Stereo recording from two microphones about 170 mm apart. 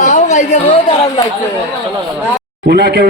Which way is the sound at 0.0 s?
45° left (ahead or behind).